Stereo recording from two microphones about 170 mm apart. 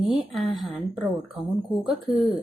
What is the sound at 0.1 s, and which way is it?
Speech, 35° right (ahead or behind).